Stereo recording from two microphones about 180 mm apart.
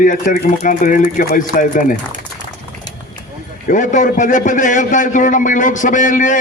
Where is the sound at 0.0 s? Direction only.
45° left (ahead or behind).